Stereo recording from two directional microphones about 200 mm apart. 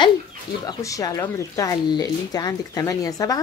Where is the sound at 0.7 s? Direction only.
15° left (ahead or behind).